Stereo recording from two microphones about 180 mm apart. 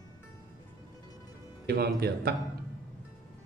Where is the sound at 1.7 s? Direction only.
60° right (ahead or behind).